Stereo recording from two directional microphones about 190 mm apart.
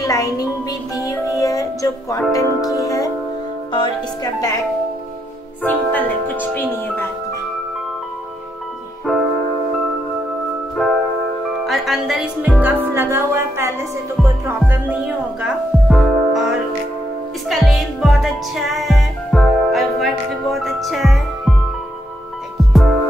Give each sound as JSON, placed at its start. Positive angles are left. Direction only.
{"t": 0.0, "sound": "music", "side_deg": 15}
{"t": 2.3, "sound": "speech", "side_deg": 20}
{"t": 5.7, "sound": "speech", "side_deg": 10}
{"t": 9.1, "sound": "music", "side_deg": 0}
{"t": 10.8, "sound": "music", "side_deg": 0}
{"t": 11.6, "sound": "a woman's voice", "side_deg": 0}
{"t": 14.7, "sound": "music", "side_deg": -10}
{"t": 22.7, "sound": "music", "side_deg": 0}